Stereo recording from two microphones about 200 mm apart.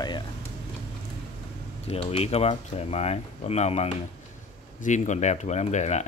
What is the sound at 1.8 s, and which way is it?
Speech, 30° left (ahead or behind).